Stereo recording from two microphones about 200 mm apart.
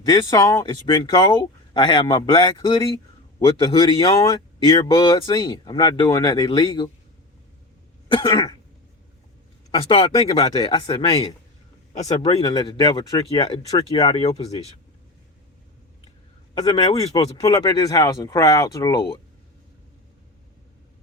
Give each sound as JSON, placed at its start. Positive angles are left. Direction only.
{"t": 0.0, "sound": "speech", "side_deg": 15}
{"t": 8.0, "sound": "cough", "side_deg": 25}
{"t": 9.7, "sound": "speech", "side_deg": 25}
{"t": 12.4, "sound": "speech", "side_deg": 20}
{"t": 16.6, "sound": "speech", "side_deg": 20}
{"t": 17.1, "sound": "speech", "side_deg": 30}
{"t": 17.3, "sound": "speech", "side_deg": 15}